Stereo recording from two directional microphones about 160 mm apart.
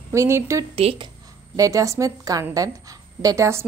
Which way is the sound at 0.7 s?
35° right (ahead or behind).